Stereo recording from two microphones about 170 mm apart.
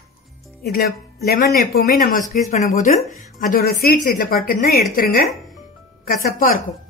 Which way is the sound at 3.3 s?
60° left (ahead or behind).